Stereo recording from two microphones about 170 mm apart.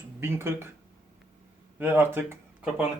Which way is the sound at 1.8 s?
10° right (ahead or behind).